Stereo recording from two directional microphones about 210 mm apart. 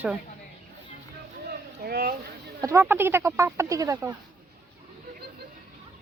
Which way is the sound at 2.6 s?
15° right (ahead or behind).